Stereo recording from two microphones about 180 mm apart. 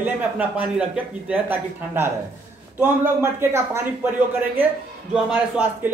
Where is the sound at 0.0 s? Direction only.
10° right (ahead or behind).